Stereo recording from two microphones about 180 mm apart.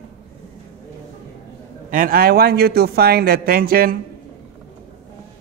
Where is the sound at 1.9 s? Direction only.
55° right (ahead or behind).